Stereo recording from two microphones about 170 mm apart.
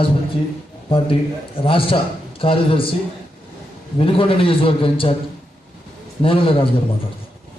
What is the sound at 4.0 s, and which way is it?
A man's voice, 30° left (ahead or behind).